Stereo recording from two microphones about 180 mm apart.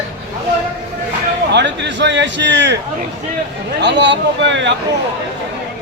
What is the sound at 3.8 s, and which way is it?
Speech, 75° right (ahead or behind).